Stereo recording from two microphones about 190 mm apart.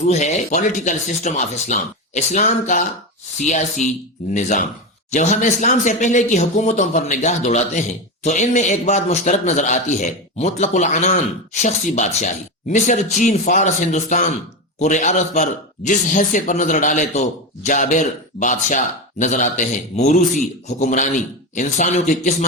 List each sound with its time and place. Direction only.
0.1 s speech: 35° left (ahead or behind)
4.4 s speech: 40° left (ahead or behind)